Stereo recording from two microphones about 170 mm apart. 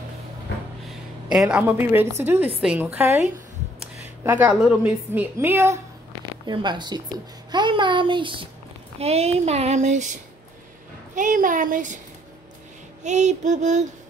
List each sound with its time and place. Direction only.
0.8 s a woman's voice: centre (ahead or behind)
4.2 s a woman's voice: 10° right (ahead or behind)
6.4 s child singing: 25° right (ahead or behind)
9.0 s speech: 40° right (ahead or behind)
11.1 s child singing: 50° right (ahead or behind)
13.0 s child singing: 45° right (ahead or behind)